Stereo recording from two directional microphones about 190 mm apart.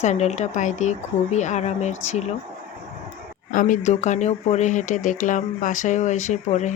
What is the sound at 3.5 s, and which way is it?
Speech, 45° left (ahead or behind).